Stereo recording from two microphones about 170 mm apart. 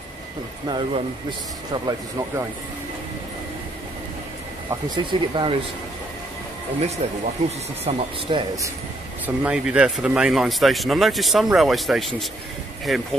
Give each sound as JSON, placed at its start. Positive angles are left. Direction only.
{"t": 0.7, "sound": "speech", "side_deg": -30}
{"t": 4.6, "sound": "speech", "side_deg": -25}
{"t": 7.0, "sound": "speech", "side_deg": -40}
{"t": 7.8, "sound": "speech", "side_deg": -30}
{"t": 9.2, "sound": "speech", "side_deg": -10}